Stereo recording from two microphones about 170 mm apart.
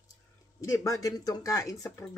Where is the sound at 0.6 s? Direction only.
20° left (ahead or behind).